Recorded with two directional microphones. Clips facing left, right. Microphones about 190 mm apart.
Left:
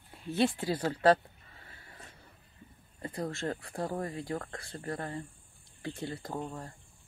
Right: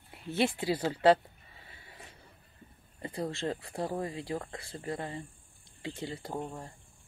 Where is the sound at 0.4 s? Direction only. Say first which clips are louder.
Even; 15° right (ahead or behind).